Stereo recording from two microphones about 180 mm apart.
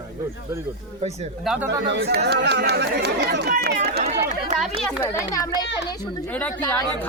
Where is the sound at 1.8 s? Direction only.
65° right (ahead or behind).